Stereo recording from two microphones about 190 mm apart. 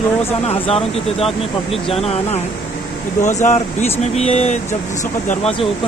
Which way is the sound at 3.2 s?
40° left (ahead or behind).